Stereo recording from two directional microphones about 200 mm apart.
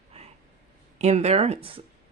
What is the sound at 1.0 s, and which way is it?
Speech, 35° right (ahead or behind).